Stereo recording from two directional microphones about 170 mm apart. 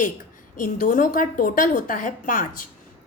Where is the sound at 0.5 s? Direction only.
55° left (ahead or behind).